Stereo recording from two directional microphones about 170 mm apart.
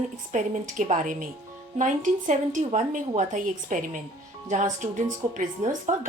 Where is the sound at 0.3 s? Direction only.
45° right (ahead or behind).